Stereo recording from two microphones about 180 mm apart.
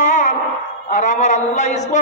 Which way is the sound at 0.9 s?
45° left (ahead or behind).